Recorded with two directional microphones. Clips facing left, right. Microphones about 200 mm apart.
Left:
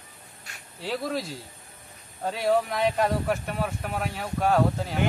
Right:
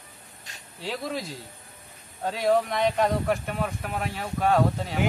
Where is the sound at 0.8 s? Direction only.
Centre (ahead or behind).